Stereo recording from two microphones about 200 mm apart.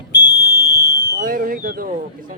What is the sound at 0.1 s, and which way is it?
Fire alarm, 60° left (ahead or behind).